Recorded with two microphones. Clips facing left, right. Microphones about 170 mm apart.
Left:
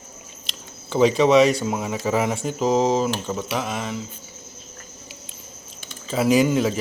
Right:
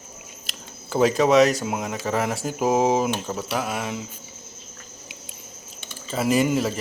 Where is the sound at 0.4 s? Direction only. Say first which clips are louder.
Left 1 dB; centre (ahead or behind).